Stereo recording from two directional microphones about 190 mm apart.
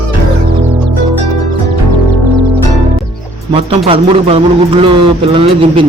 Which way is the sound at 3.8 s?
30° right (ahead or behind).